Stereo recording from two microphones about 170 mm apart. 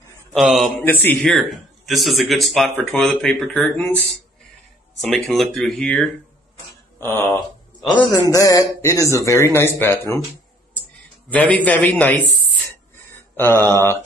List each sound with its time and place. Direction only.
0.3 s speech: centre (ahead or behind)
0.7 s speech: 10° left (ahead or behind)
1.2 s speech: centre (ahead or behind)
5.0 s speech: centre (ahead or behind)
7.3 s a sound: centre (ahead or behind)
8.3 s speech: 20° left (ahead or behind)
11.2 s speech: 10° left (ahead or behind)
13.4 s speech: 15° left (ahead or behind)